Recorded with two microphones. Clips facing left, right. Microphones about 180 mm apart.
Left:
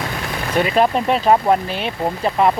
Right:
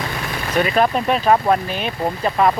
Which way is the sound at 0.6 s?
20° left (ahead or behind).